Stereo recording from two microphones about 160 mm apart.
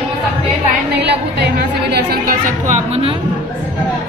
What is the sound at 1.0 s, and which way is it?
Chatter, 90° right.